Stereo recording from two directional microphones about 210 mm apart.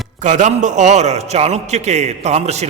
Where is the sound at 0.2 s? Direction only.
35° right (ahead or behind).